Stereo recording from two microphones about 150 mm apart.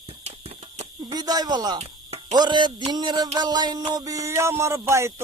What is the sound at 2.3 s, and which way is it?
Music, 30° right (ahead or behind).